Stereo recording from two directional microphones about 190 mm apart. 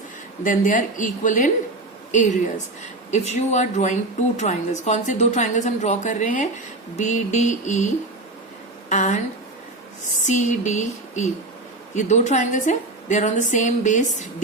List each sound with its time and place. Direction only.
0.4 s a woman's voice: 45° left (ahead or behind)
8.9 s a woman's voice: 40° left (ahead or behind)
10.2 s a woman's voice: 40° left (ahead or behind)